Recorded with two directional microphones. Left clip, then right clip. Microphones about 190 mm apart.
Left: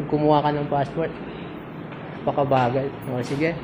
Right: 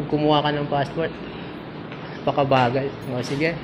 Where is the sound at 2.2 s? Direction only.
5° right (ahead or behind).